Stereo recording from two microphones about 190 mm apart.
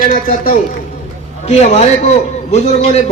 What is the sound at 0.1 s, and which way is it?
Speech, 45° left (ahead or behind).